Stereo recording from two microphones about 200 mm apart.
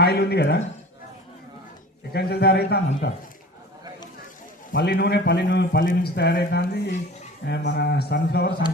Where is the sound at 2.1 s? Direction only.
55° left (ahead or behind).